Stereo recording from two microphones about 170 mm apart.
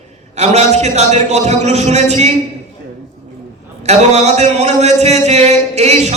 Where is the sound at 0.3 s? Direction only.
40° right (ahead or behind).